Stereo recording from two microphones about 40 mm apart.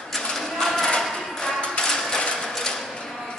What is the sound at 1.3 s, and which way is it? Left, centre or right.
Music, centre.